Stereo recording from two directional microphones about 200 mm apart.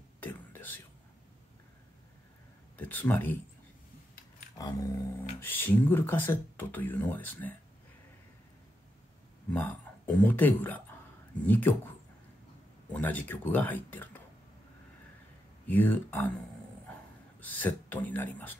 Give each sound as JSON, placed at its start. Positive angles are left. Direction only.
{"t": 0.2, "sound": "whispering", "side_deg": 10}
{"t": 2.8, "sound": "speech", "side_deg": 10}
{"t": 4.6, "sound": "speech", "side_deg": 20}
{"t": 9.5, "sound": "speech", "side_deg": 10}
{"t": 12.9, "sound": "speech", "side_deg": 10}
{"t": 15.6, "sound": "speech", "side_deg": 10}
{"t": 17.4, "sound": "speech", "side_deg": 10}